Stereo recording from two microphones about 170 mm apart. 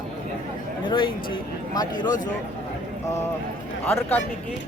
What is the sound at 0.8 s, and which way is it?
Speech, 30° left (ahead or behind).